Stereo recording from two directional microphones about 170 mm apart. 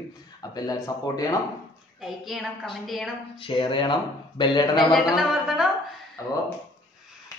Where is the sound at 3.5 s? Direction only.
30° left (ahead or behind).